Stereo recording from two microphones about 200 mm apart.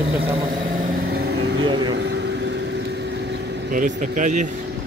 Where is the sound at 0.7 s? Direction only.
45° right (ahead or behind); by 2.6 s 60° right (ahead or behind).